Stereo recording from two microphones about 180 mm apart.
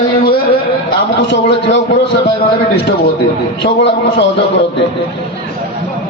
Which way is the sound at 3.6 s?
70° left (ahead or behind).